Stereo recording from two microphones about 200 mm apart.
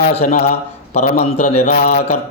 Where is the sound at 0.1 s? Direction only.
35° left (ahead or behind).